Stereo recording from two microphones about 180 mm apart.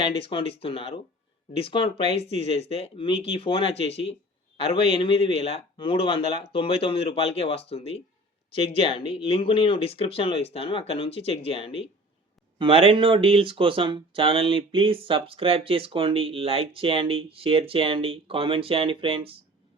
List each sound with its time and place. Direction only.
0.0 s speech: 30° left (ahead or behind)
12.5 s speech: 30° right (ahead or behind)